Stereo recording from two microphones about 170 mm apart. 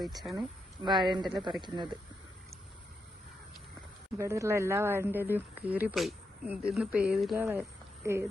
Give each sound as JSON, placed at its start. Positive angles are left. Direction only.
{"t": 0.0, "sound": "speech", "side_deg": 0}
{"t": 0.3, "sound": "a woman's voice", "side_deg": -25}
{"t": 4.2, "sound": "speech", "side_deg": -15}
{"t": 7.3, "sound": "speech", "side_deg": -15}